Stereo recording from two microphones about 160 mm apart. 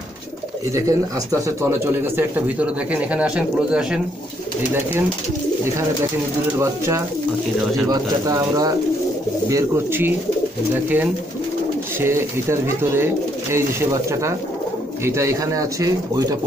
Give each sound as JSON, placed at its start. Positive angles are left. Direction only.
{"t": 0.7, "sound": "speech", "side_deg": -20}
{"t": 7.9, "sound": "speech", "side_deg": -25}